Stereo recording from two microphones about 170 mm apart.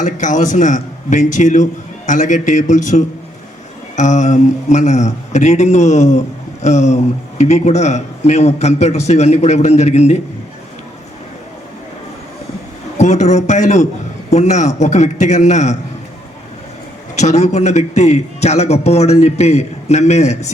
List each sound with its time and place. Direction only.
0.0 s a man's voice: 45° left (ahead or behind)
13.0 s a man's voice: 45° left (ahead or behind)
17.2 s speech: 45° left (ahead or behind)